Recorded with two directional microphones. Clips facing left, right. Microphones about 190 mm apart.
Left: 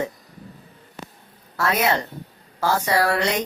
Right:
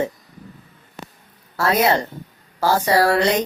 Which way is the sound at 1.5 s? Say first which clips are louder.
Right 4 dB; 30° right (ahead or behind).